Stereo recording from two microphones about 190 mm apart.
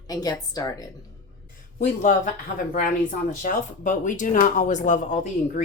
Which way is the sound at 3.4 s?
45° left (ahead or behind).